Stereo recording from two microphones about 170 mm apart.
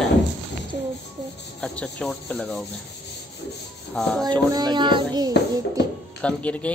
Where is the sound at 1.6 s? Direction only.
5° left (ahead or behind).